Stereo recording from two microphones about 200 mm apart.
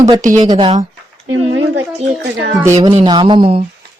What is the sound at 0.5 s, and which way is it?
Speech, 30° right (ahead or behind).